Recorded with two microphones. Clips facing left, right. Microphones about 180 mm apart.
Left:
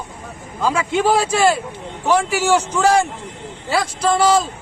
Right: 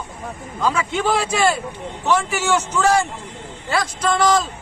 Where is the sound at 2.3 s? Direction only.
35° left (ahead or behind).